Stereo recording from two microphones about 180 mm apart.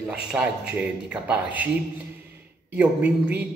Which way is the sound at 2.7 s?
10° right (ahead or behind).